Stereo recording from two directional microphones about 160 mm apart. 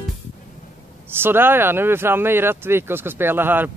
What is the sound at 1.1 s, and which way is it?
Speech, 15° right (ahead or behind).